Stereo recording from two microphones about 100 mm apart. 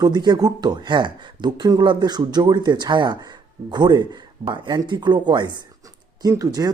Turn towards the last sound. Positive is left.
turn(degrees=-35)  # may be behind; listen again after turning